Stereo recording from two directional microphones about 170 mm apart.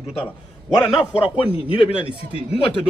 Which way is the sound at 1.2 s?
30° left (ahead or behind).